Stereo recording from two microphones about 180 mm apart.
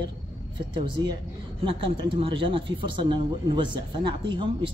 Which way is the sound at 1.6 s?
30° right (ahead or behind).